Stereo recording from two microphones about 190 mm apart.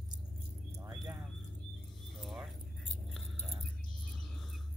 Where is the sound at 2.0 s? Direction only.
Centre (ahead or behind).